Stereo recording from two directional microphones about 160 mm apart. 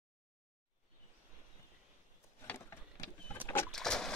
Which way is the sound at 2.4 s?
15° left (ahead or behind).